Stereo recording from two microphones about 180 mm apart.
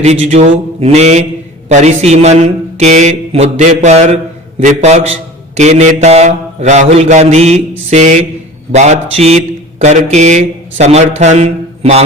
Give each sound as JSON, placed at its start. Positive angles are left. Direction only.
{"t": 0.0, "sound": "speech", "side_deg": -40}